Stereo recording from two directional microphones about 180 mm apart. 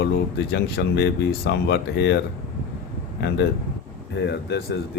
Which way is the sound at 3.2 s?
70° left (ahead or behind).